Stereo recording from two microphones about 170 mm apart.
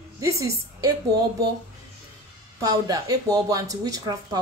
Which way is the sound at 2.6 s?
20° right (ahead or behind).